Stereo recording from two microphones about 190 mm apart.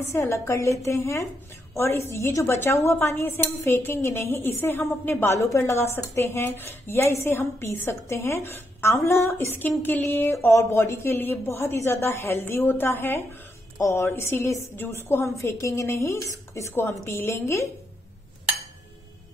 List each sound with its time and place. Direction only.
0.1 s a woman's voice: 15° left (ahead or behind)